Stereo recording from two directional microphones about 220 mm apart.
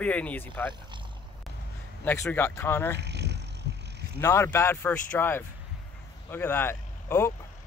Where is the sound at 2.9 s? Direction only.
50° right (ahead or behind).